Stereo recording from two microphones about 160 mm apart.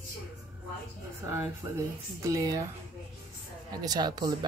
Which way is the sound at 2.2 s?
20° right (ahead or behind).